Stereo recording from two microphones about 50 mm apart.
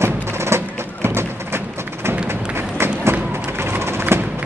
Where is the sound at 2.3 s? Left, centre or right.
Right.